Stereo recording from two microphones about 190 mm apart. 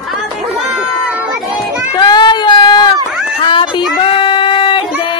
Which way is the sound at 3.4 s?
25° left (ahead or behind).